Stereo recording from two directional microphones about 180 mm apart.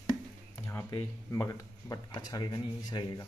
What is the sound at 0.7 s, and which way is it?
Speech, 15° left (ahead or behind).